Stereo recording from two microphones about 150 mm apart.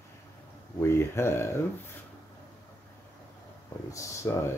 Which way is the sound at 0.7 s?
15° left (ahead or behind).